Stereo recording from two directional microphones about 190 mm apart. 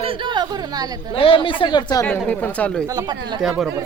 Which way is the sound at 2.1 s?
5° left (ahead or behind).